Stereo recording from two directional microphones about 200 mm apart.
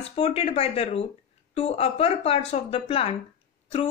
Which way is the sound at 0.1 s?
30° left (ahead or behind).